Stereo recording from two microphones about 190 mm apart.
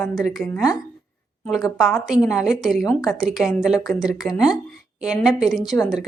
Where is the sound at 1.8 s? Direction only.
Centre (ahead or behind).